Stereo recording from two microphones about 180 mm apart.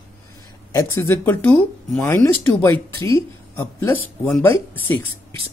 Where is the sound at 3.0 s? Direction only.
30° right (ahead or behind).